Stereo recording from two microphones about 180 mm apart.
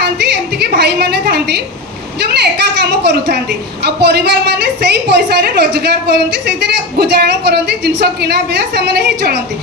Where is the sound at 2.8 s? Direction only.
70° right (ahead or behind).